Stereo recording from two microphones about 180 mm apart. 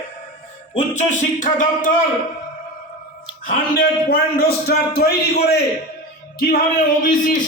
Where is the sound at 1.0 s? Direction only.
45° left (ahead or behind).